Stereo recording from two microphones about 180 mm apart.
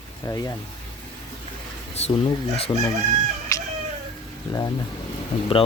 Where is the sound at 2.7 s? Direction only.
20° left (ahead or behind).